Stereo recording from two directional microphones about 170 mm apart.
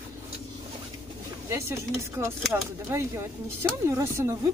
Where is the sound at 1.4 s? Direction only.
15° right (ahead or behind).